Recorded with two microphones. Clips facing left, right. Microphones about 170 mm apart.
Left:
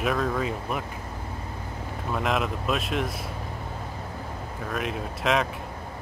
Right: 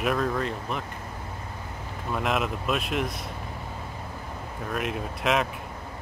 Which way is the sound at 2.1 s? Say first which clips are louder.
Even; centre (ahead or behind).